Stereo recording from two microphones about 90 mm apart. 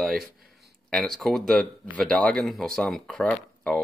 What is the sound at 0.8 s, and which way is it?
Speech, 5° left (ahead or behind).